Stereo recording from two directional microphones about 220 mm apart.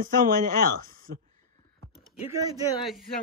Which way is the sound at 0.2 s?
40° right (ahead or behind).